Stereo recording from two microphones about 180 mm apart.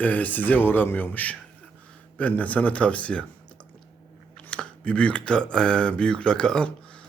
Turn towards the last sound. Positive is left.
turn(degrees=5)  # may be behind; listen again after turning